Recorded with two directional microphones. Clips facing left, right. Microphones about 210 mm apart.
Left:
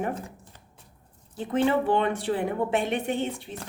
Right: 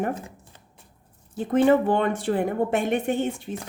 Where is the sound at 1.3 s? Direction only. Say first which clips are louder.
Right 5 dB; 45° right (ahead or behind).